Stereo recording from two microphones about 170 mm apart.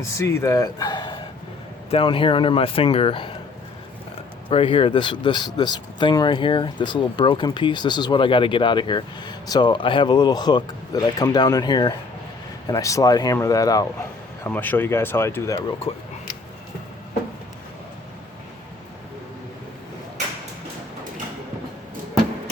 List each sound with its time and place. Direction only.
0.1 s speech: 15° left (ahead or behind); by 3.3 s 30° left (ahead or behind)
4.4 s speech: 30° left (ahead or behind); by 15.6 s 15° left (ahead or behind)